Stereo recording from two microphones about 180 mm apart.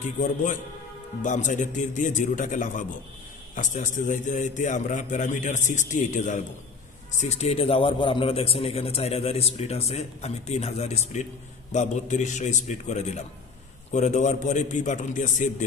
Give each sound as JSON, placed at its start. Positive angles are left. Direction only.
{"t": 0.2, "sound": "a man's voice", "side_deg": 45}